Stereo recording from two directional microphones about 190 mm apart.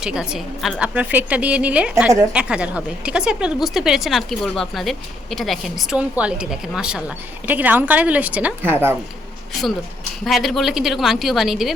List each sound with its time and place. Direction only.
0.0 s a woman's voice: 5° right (ahead or behind)
10.2 s a woman's voice: centre (ahead or behind)